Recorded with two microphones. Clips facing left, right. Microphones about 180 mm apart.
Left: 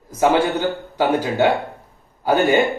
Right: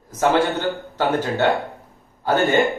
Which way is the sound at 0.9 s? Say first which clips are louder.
Left 3 dB; 10° left (ahead or behind).